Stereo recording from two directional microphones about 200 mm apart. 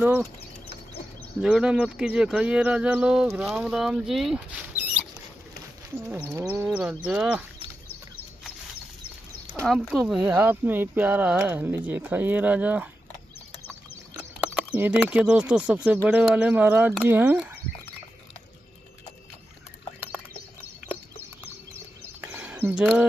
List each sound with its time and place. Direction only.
1.4 s speech: 5° right (ahead or behind)
6.0 s speech: 5° right (ahead or behind)
9.7 s speech: centre (ahead or behind)
14.1 s speech: 5° right (ahead or behind)
22.3 s a sound: 10° right (ahead or behind)